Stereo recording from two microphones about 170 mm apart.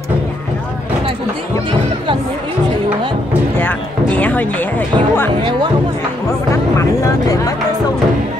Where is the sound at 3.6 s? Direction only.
10° left (ahead or behind).